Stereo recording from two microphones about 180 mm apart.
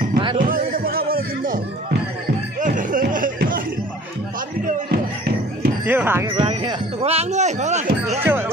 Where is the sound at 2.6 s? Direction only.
45° right (ahead or behind).